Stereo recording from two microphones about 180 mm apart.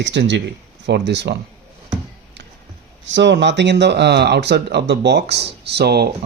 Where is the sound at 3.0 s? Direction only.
85° right.